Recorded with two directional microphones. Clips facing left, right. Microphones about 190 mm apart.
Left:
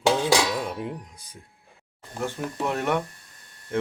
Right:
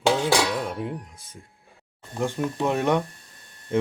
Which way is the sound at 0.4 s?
5° left (ahead or behind).